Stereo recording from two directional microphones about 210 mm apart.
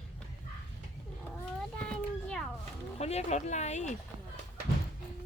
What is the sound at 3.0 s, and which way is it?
Speech, 30° left (ahead or behind).